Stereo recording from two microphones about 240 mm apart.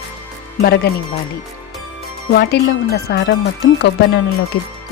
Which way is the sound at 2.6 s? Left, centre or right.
Left.